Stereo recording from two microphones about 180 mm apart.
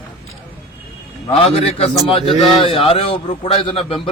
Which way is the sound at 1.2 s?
30° left (ahead or behind).